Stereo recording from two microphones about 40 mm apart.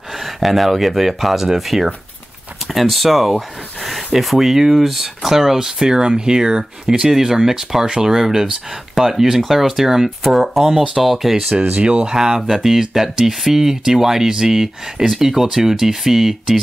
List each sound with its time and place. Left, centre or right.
0.2 s speech: centre
11.7 s speech: right
12.1 s speech: centre